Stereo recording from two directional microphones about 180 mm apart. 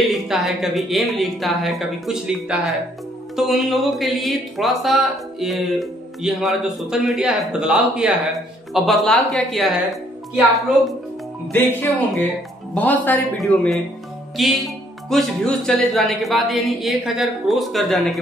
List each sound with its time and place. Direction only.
0.1 s speech: centre (ahead or behind)
11.5 s speech: 10° left (ahead or behind)